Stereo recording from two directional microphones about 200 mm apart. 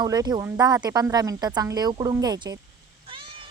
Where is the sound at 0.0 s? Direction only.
20° right (ahead or behind).